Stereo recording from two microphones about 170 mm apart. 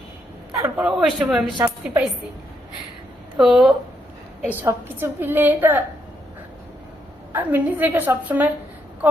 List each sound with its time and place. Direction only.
0.5 s a woman's voice: 15° right (ahead or behind)
0.9 s a man's voice: 5° right (ahead or behind)
1.5 s a woman's voice: 25° right (ahead or behind)
3.3 s a man's voice: centre (ahead or behind)
4.4 s a woman's voice: 15° right (ahead or behind)
7.3 s a woman's voice: 10° right (ahead or behind)